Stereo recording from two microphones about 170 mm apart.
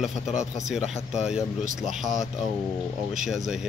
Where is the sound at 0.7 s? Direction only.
Centre (ahead or behind).